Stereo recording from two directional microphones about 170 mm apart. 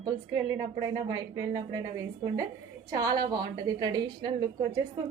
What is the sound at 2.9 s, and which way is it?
A woman's voice, 20° right (ahead or behind).